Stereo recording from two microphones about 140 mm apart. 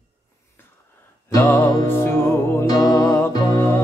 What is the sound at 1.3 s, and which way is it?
Music, 20° left (ahead or behind).